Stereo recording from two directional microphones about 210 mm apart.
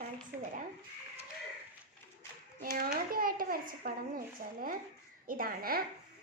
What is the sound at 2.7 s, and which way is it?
A child's voice, 45° right (ahead or behind).